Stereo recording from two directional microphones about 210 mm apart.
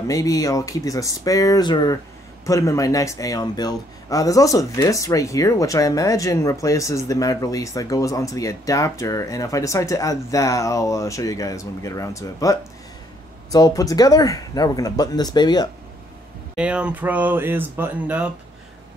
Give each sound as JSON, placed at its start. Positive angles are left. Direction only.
{"t": 0.1, "sound": "speech", "side_deg": 15}
{"t": 16.5, "sound": "speech", "side_deg": -5}